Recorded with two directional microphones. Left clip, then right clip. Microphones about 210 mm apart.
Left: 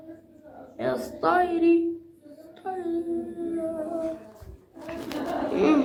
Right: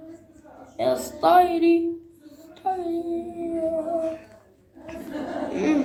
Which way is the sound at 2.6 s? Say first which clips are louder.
Right 7 dB; 15° right (ahead or behind).